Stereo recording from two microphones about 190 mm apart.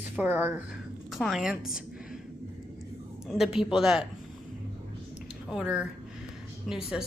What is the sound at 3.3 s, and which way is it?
Speech, centre (ahead or behind).